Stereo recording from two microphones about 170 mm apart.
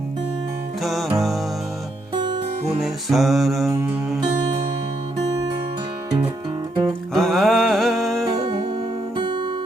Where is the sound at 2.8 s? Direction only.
Centre (ahead or behind).